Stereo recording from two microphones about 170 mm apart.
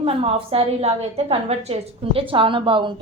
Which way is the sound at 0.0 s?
35° right (ahead or behind).